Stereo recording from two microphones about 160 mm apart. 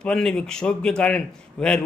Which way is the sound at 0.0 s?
5° left (ahead or behind).